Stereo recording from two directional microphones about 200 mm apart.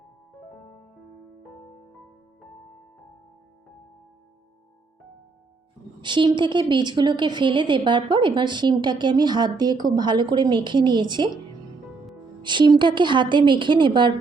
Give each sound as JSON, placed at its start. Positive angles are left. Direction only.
{"t": 6.0, "sound": "a woman's voice", "side_deg": -25}
{"t": 12.4, "sound": "a woman's voice", "side_deg": -25}